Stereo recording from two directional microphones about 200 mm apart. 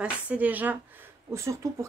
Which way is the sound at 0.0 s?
5° right (ahead or behind).